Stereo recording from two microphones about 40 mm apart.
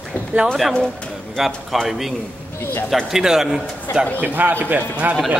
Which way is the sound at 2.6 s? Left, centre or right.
Left.